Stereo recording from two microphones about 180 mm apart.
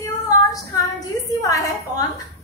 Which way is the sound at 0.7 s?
20° left (ahead or behind).